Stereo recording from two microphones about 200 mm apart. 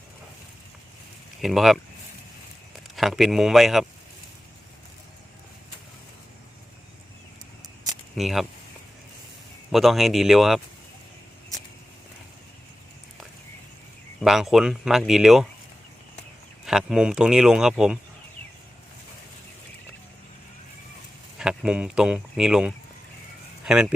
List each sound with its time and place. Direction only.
1.4 s speech: centre (ahead or behind)
2.9 s speech: centre (ahead or behind)
8.1 s speech: centre (ahead or behind)
9.7 s speech: centre (ahead or behind)
14.2 s speech: centre (ahead or behind)
16.6 s speech: 5° right (ahead or behind)
21.3 s speech: 5° right (ahead or behind)